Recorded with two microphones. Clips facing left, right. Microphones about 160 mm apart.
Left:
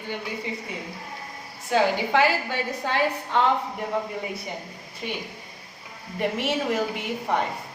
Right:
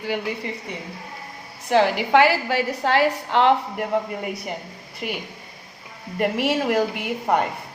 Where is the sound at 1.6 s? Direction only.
70° right (ahead or behind).